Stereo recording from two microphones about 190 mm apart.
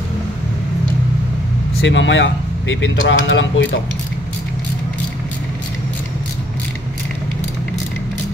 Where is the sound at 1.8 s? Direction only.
75° left (ahead or behind).